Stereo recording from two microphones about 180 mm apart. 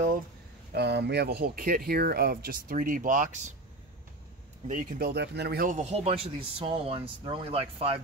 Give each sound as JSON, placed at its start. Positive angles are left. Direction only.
{"t": 0.7, "sound": "speech", "side_deg": -70}
{"t": 4.6, "sound": "a man's voice", "side_deg": -50}